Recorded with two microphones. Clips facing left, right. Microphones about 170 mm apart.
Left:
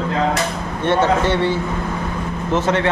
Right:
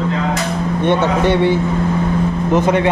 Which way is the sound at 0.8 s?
15° right (ahead or behind).